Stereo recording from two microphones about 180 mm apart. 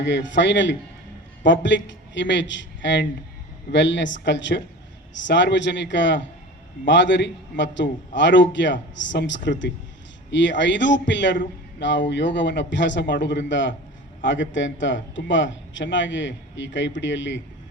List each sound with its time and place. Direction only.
0.0 s a man's voice: 85° left